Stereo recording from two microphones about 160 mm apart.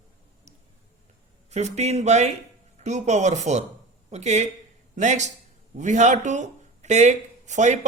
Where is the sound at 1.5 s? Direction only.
45° right (ahead or behind).